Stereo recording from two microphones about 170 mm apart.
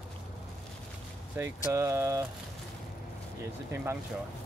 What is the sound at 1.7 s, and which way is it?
Speech, 15° right (ahead or behind).